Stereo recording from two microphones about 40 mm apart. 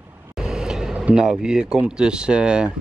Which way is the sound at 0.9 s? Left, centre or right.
Right.